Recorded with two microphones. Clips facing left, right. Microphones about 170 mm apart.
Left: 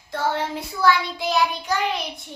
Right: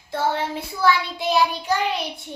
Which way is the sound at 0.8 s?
25° right (ahead or behind).